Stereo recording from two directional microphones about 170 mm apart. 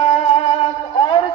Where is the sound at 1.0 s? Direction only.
30° left (ahead or behind).